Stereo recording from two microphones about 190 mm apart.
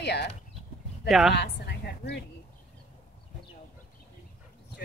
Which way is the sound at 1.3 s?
60° left (ahead or behind).